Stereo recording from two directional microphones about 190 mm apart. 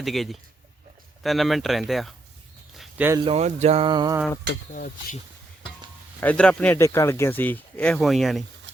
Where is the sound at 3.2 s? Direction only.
30° right (ahead or behind).